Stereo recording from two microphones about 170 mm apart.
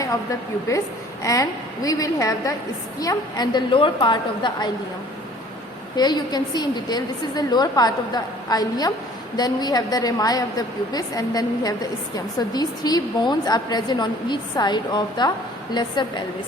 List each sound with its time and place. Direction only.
0.7 s a woman's voice: 20° left (ahead or behind)
6.0 s a woman's voice: 25° left (ahead or behind)